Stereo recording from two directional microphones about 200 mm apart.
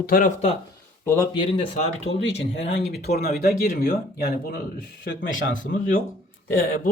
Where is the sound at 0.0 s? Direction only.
45° left (ahead or behind).